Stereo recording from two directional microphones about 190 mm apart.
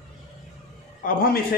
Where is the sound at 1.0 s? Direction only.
50° left (ahead or behind).